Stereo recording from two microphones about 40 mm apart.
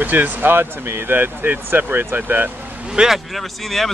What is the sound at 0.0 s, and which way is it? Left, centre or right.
Speech, right.